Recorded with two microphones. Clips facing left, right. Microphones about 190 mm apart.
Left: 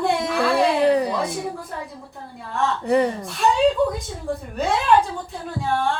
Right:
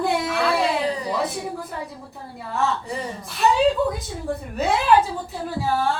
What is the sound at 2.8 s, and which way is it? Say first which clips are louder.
Speech: left 12 dB; 65° left (ahead or behind).